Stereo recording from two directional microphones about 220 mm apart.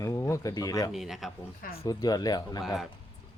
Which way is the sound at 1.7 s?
15° left (ahead or behind).